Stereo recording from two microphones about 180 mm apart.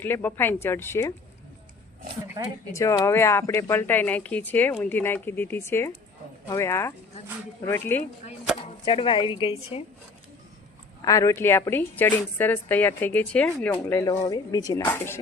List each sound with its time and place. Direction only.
0.0 s a woman's voice: 10° left (ahead or behind)
2.7 s a woman's voice: 15° left (ahead or behind)
8.8 s speech: 25° left (ahead or behind)
11.0 s a woman's voice: 20° left (ahead or behind)